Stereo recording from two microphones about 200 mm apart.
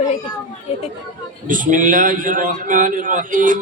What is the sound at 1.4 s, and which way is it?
A man's voice, 40° right (ahead or behind).